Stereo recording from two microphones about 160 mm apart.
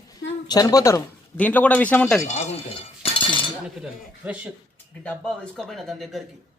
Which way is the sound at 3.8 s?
10° right (ahead or behind).